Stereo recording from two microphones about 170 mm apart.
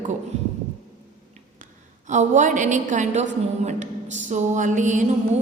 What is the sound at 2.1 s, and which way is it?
A man's voice, 45° right (ahead or behind).